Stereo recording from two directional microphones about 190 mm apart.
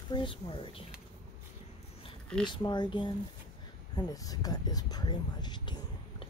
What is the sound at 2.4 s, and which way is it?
Speech, 25° left (ahead or behind).